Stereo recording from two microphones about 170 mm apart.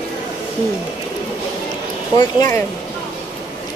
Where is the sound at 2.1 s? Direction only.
15° left (ahead or behind).